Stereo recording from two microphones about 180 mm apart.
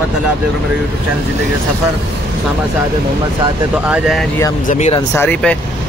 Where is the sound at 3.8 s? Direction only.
5° right (ahead or behind).